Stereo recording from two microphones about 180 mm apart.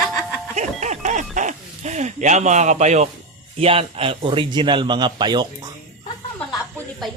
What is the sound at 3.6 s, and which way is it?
A man's voice, 35° right (ahead or behind).